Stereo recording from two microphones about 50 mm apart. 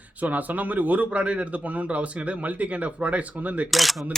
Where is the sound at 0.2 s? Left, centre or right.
Right.